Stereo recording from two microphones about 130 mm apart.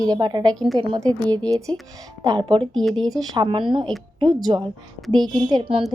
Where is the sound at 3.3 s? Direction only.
40° right (ahead or behind).